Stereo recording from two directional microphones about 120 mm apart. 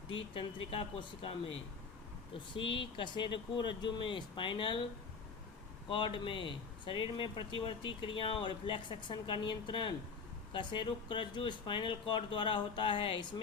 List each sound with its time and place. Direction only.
0.3 s speech: 45° left (ahead or behind)
2.6 s speech: 45° left (ahead or behind)
5.9 s speech: 45° left (ahead or behind)